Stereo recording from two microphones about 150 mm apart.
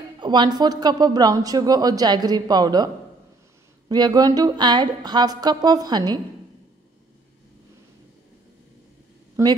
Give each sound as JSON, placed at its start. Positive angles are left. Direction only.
{"t": 0.2, "sound": "speech", "side_deg": -30}
{"t": 3.9, "sound": "speech", "side_deg": -25}
{"t": 9.4, "sound": "speech", "side_deg": -20}